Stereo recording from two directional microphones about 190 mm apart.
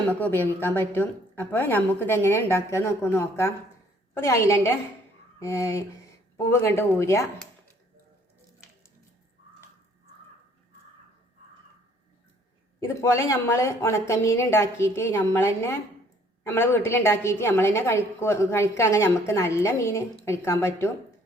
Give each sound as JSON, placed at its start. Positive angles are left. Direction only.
{"t": 0.1, "sound": "a woman's voice", "side_deg": 10}
{"t": 12.8, "sound": "a woman's voice", "side_deg": 15}